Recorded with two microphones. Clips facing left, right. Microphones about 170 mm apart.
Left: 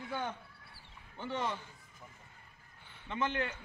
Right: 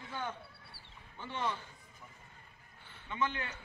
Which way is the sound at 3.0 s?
55° left (ahead or behind).